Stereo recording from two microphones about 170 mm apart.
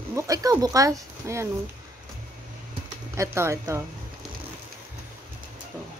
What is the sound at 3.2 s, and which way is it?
Speech, 15° right (ahead or behind).